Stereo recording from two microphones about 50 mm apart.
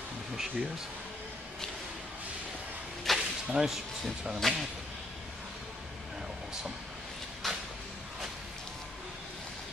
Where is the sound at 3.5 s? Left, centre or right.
Centre.